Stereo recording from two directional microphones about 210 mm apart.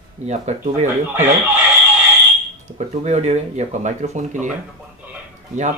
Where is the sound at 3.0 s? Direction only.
30° right (ahead or behind).